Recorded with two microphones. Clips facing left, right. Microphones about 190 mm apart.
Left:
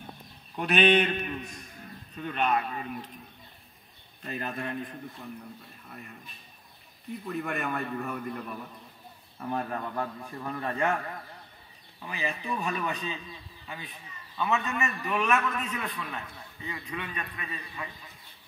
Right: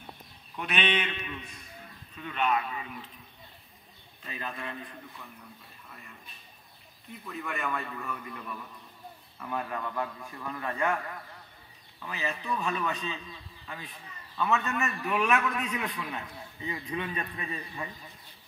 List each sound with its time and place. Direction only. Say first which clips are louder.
0.6 s a man's voice: left 7 dB; 40° left (ahead or behind)
4.2 s a man's voice: left 4 dB; 50° left (ahead or behind)
7.2 s a man's voice: left 3 dB; 50° left (ahead or behind); by 11.0 s 30° left (ahead or behind)
12.0 s speech: left 1 dB; 15° left (ahead or behind)
14.3 s a man's voice: even; 5° left (ahead or behind); by 16.2 s 15° right (ahead or behind)
16.6 s a man's voice: right 3 dB; 25° right (ahead or behind)